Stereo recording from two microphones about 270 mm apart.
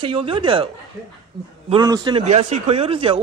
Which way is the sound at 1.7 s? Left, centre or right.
Centre.